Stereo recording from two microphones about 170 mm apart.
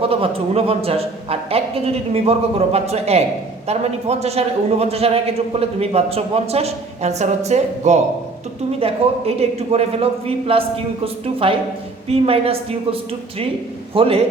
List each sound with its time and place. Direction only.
0.0 s a man's voice: 35° right (ahead or behind)